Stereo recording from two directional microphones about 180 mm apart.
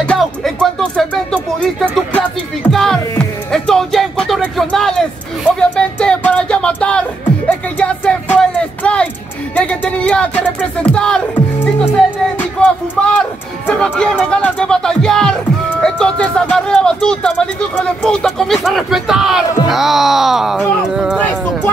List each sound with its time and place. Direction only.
0.0 s music: 5° left (ahead or behind)
3.5 s speech: centre (ahead or behind)
5.6 s music: 5° left (ahead or behind)
10.8 s speech: 5° left (ahead or behind)
12.4 s a sound: 5° left (ahead or behind)
13.8 s speech: 5° left (ahead or behind)
15.8 s music: 5° left (ahead or behind)
18.0 s speech: 5° left (ahead or behind)